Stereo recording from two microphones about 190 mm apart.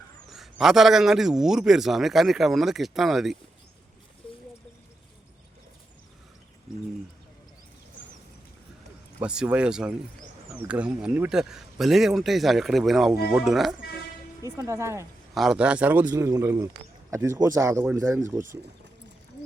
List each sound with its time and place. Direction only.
0.3 s speech: centre (ahead or behind)
9.2 s speech: 5° right (ahead or behind)
14.4 s speech: 15° right (ahead or behind)
15.4 s speech: 5° right (ahead or behind)